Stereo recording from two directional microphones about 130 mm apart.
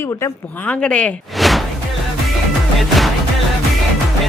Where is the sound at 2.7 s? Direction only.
Centre (ahead or behind).